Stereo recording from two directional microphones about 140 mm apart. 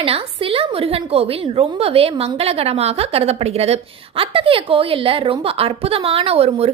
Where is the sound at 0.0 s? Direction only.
45° right (ahead or behind).